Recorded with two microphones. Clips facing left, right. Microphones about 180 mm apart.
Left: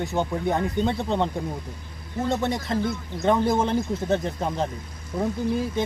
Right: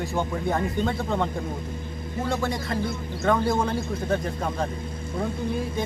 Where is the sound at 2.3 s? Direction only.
20° left (ahead or behind).